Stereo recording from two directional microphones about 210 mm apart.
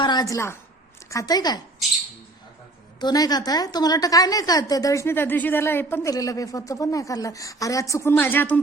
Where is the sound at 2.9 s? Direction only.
20° left (ahead or behind).